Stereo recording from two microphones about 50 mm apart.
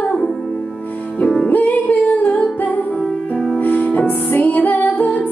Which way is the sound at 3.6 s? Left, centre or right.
Left.